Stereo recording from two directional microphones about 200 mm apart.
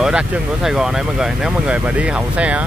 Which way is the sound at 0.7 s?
5° right (ahead or behind).